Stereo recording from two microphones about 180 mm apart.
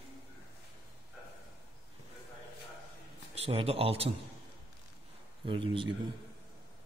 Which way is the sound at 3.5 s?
35° right (ahead or behind).